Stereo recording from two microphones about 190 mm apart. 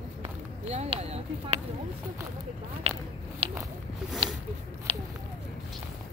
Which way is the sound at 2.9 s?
30° right (ahead or behind).